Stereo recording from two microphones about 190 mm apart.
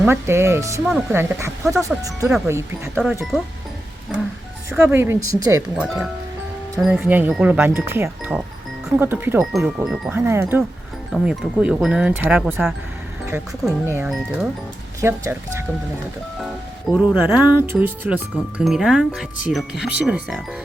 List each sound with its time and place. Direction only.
0.1 s speech: 15° right (ahead or behind)
4.7 s speech: 10° right (ahead or behind)
5.7 s speech: 5° right (ahead or behind)
10.2 s speech: 15° right (ahead or behind)
16.9 s speech: 5° right (ahead or behind)